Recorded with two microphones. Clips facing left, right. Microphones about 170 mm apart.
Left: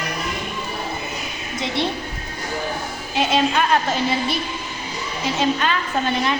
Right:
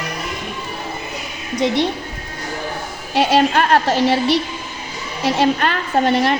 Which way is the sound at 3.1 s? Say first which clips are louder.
Right 5 dB; 65° right (ahead or behind).